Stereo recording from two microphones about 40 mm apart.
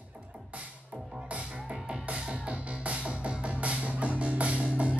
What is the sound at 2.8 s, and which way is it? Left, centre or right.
Music, right.